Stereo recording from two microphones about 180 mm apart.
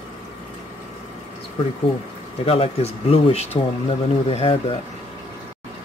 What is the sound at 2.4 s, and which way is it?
Speech, 35° left (ahead or behind).